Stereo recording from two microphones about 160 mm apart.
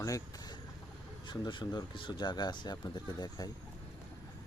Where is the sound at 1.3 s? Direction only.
30° left (ahead or behind).